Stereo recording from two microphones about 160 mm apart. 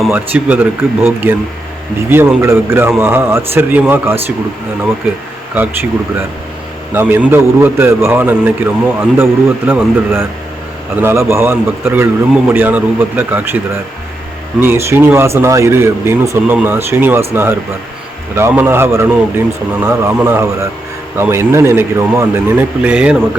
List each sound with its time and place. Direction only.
0.1 s a man's voice: 10° right (ahead or behind)
6.9 s a man's voice: 10° right (ahead or behind)
14.6 s a man's voice: 15° right (ahead or behind)